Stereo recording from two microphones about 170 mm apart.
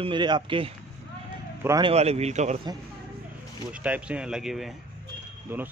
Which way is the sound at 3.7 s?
5° right (ahead or behind).